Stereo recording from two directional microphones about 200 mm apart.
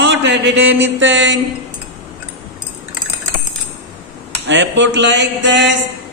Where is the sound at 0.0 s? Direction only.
65° right (ahead or behind).